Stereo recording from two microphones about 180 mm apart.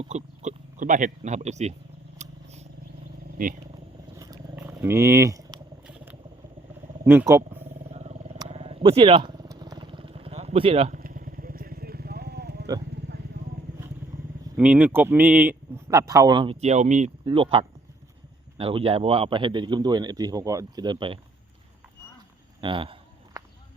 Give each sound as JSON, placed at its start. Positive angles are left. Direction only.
{"t": 0.0, "sound": "speech", "side_deg": -40}
{"t": 2.2, "sound": "vehicle", "side_deg": -40}
{"t": 3.4, "sound": "speech", "side_deg": -50}
{"t": 4.2, "sound": "roaring cats", "side_deg": -15}
{"t": 5.5, "sound": "a sound", "side_deg": -5}
{"t": 7.0, "sound": "speech", "side_deg": -10}
{"t": 7.6, "sound": "wild animals", "side_deg": -35}
{"t": 8.4, "sound": "motorcycle", "side_deg": -35}
{"t": 11.0, "sound": "vehicle", "side_deg": -50}
{"t": 14.5, "sound": "a man's voice", "side_deg": -10}
{"t": 17.2, "sound": "a man's voice", "side_deg": -30}
{"t": 22.6, "sound": "a sound", "side_deg": -30}